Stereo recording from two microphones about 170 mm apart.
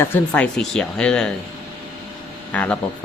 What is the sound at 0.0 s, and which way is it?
Speech, 10° left (ahead or behind).